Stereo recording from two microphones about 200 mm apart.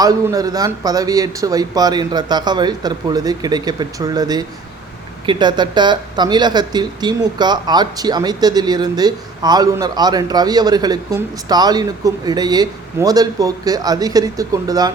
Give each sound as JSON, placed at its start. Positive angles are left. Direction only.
{"t": 0.0, "sound": "speech", "side_deg": -20}